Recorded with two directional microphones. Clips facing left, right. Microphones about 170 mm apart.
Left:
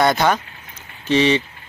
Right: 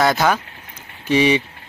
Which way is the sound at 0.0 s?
Centre (ahead or behind).